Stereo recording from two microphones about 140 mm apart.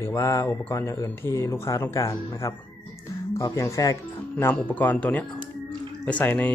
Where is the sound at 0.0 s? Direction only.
20° left (ahead or behind).